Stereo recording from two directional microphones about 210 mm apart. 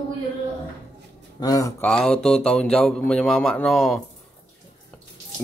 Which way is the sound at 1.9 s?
5° left (ahead or behind).